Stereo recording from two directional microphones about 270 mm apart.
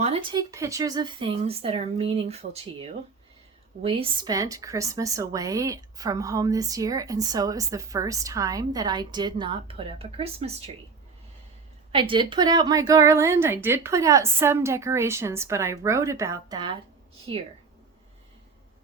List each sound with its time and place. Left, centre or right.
0.0 s speech: centre
11.9 s speech: centre